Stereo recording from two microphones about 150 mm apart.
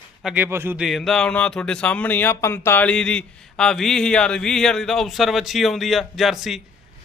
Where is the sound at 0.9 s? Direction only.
Centre (ahead or behind).